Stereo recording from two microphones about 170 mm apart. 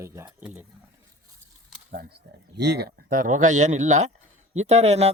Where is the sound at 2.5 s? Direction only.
80° right; by 5.1 s 40° right (ahead or behind).